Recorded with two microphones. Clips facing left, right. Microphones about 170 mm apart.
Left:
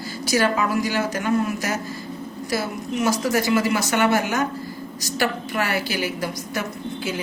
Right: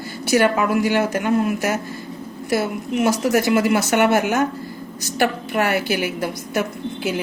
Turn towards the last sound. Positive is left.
turn(degrees=-60)  # may be behind; listen again after turning